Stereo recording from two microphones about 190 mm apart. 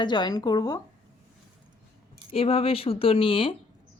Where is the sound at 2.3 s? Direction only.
30° left (ahead or behind).